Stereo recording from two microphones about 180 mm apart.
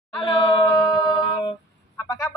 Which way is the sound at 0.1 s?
25° left (ahead or behind).